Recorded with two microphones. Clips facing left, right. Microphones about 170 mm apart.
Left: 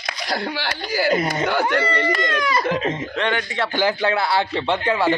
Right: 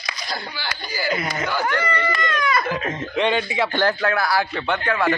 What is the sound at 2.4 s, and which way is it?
Speech, 30° left (ahead or behind).